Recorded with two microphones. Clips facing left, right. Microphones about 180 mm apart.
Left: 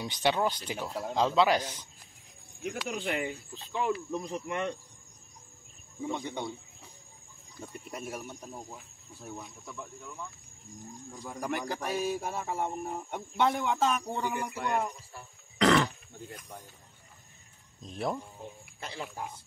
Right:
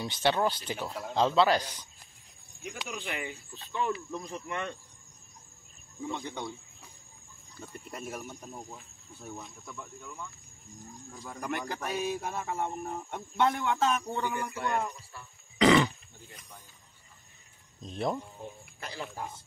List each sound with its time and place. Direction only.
0.0 s speech: 15° left (ahead or behind)
2.9 s speech: 40° left (ahead or behind)
3.5 s speech: 15° left (ahead or behind)
6.0 s speech: 15° left (ahead or behind)
7.5 s speech: 10° left (ahead or behind)
11.2 s speech: 5° left (ahead or behind)
15.6 s a sound: 5° right (ahead or behind)
17.8 s speech: 5° left (ahead or behind)